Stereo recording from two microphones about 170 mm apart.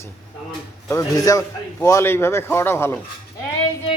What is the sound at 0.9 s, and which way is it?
A man's voice, 20° left (ahead or behind).